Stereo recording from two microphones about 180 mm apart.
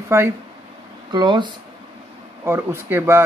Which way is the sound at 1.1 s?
25° right (ahead or behind).